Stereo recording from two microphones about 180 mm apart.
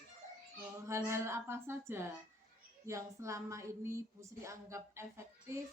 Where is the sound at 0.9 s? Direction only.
15° right (ahead or behind).